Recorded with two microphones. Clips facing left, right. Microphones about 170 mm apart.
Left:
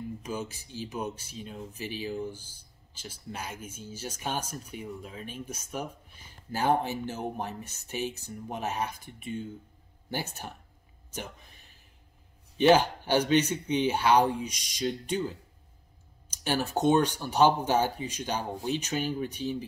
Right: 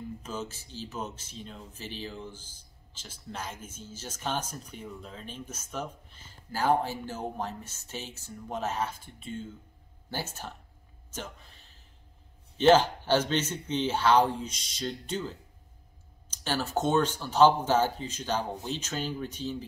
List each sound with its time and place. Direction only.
0.2 s speech: 15° left (ahead or behind)
11.1 s a sound: 15° left (ahead or behind)
12.5 s speech: 15° left (ahead or behind)